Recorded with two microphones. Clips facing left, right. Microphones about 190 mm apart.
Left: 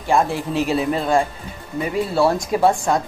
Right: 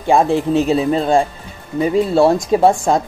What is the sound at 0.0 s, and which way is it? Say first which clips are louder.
Speech: right 5 dB; 25° right (ahead or behind).